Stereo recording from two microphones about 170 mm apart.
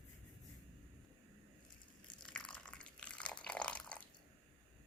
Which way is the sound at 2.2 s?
5° left (ahead or behind).